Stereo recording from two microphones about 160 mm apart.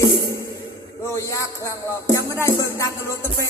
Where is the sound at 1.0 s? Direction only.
15° left (ahead or behind).